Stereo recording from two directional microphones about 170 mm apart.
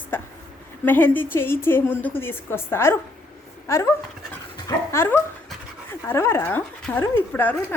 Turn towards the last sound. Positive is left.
turn(degrees=10)  # may be behind; listen again after turning